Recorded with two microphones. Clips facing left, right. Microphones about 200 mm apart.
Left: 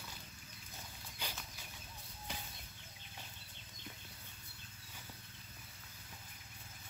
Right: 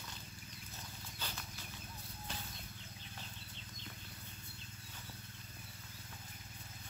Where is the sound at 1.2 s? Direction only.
10° left (ahead or behind).